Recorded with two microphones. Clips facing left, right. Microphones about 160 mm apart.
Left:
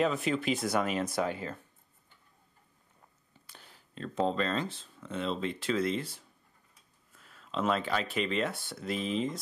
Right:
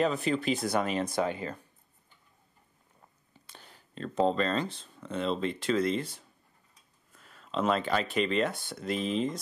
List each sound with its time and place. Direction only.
0.0 s speech: centre (ahead or behind)
1.1 s speech: 20° right (ahead or behind)
3.5 s a sound: 5° left (ahead or behind)
4.3 s speech: centre (ahead or behind)